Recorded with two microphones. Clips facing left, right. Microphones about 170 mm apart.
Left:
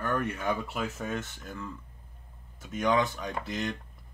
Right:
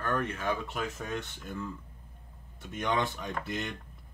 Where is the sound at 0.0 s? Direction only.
10° left (ahead or behind).